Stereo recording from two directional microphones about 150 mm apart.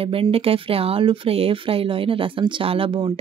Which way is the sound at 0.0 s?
40° right (ahead or behind).